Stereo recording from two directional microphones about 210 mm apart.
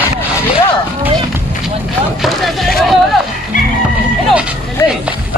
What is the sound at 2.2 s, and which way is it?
Speech, centre (ahead or behind).